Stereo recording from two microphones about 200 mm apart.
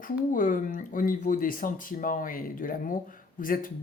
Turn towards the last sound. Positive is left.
turn(degrees=45)  # may be behind; listen again after turning